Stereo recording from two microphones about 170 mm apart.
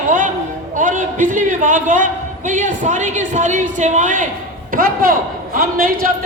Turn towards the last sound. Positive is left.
turn(degrees=-55)  # may be behind; listen again after turning